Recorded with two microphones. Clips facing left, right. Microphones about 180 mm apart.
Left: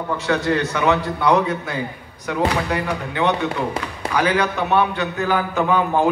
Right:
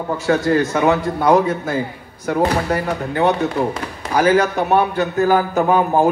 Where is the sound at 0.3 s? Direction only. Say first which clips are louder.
Right 4 dB; 45° right (ahead or behind).